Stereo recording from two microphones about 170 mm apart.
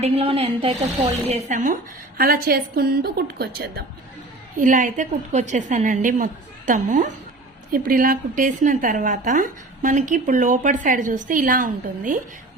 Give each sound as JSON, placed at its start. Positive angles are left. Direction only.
{"t": 0.0, "sound": "a woman's voice", "side_deg": -35}
{"t": 1.3, "sound": "a woman's voice", "side_deg": -45}
{"t": 4.5, "sound": "a woman's voice", "side_deg": -50}